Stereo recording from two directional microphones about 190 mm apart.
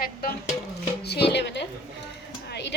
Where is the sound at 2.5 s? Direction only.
65° left (ahead or behind).